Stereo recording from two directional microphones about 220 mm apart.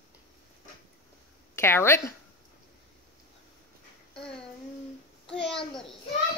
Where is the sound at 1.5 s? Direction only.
10° left (ahead or behind).